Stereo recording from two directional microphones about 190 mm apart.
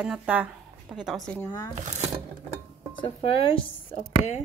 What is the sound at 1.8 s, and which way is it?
Speech, 35° right (ahead or behind).